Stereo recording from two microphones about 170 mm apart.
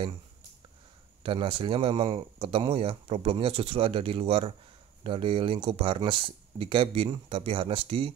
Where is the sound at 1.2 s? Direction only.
30° right (ahead or behind).